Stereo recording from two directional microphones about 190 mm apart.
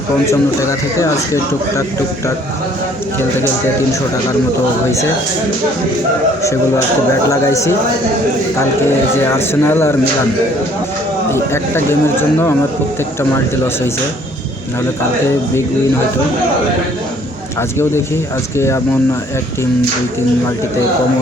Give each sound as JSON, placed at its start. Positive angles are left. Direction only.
{"t": 0.3, "sound": "speech", "side_deg": 15}
{"t": 7.1, "sound": "speech", "side_deg": 15}
{"t": 9.2, "sound": "speech", "side_deg": 10}
{"t": 11.3, "sound": "speech", "side_deg": 15}
{"t": 17.6, "sound": "speech", "side_deg": 15}